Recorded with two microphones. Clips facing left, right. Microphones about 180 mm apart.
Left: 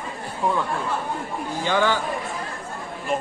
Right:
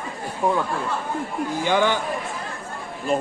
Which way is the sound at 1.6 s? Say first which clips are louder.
Right 1 dB; 15° right (ahead or behind).